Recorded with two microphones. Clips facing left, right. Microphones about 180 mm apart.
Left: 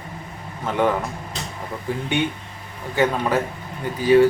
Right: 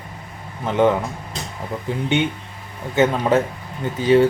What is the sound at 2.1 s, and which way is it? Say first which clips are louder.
Speech: right 3 dB; 20° right (ahead or behind).